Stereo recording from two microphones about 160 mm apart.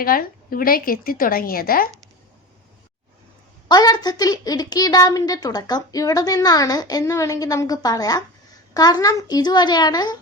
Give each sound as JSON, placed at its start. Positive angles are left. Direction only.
{"t": 0.0, "sound": "a woman's voice", "side_deg": 65}
{"t": 3.7, "sound": "a woman's voice", "side_deg": 25}